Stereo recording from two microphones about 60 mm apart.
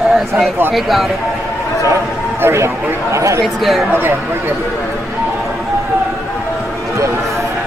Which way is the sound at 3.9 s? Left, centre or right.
Right.